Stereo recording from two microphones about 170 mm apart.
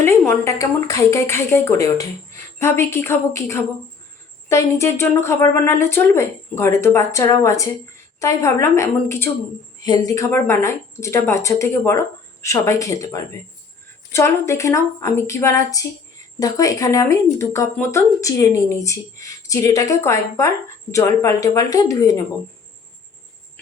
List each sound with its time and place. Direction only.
0.0 s speech: 15° left (ahead or behind)